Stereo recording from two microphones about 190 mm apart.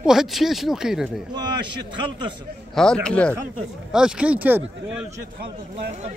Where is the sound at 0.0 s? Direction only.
5° right (ahead or behind).